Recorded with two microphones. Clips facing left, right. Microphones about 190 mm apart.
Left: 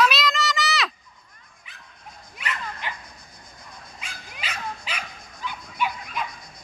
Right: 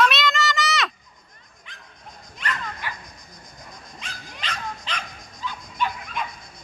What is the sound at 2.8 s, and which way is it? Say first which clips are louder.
Music: left 2 dB; 20° left (ahead or behind).